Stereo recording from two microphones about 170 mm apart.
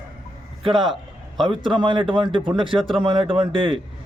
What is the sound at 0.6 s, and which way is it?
A man's voice, 25° right (ahead or behind).